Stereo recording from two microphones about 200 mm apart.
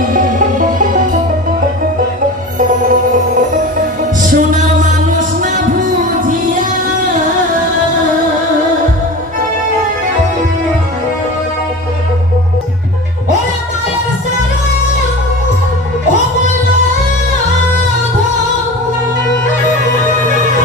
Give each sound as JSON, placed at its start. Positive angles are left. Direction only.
{"t": 0.1, "sound": "music", "side_deg": -40}
{"t": 2.6, "sound": "music", "side_deg": -40}